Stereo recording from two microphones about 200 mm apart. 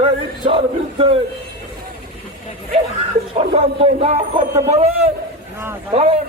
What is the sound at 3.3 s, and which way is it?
A man's voice, 30° right (ahead or behind).